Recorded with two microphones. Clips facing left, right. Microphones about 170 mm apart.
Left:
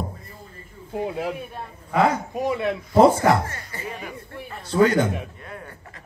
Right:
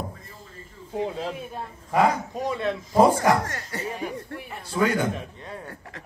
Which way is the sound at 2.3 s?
15° left (ahead or behind).